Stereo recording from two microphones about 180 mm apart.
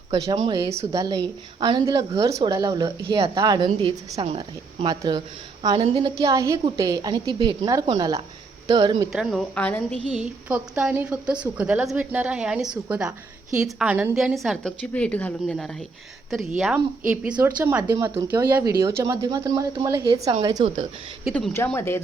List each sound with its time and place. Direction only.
0.4 s a woman's voice: 20° right (ahead or behind)
9.1 s a woman's voice: centre (ahead or behind)
10.1 s a woman's voice: 5° right (ahead or behind)
20.6 s a woman's voice: 40° right (ahead or behind)
21.3 s a woman's voice: 10° left (ahead or behind)